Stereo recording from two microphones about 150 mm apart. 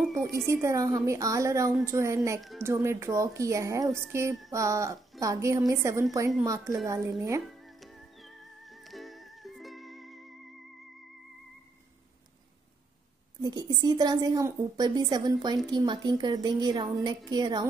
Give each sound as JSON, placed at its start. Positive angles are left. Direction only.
{"t": 0.1, "sound": "a woman's voice", "side_deg": -20}
{"t": 7.5, "sound": "music", "side_deg": 0}
{"t": 13.4, "sound": "a woman's voice", "side_deg": -30}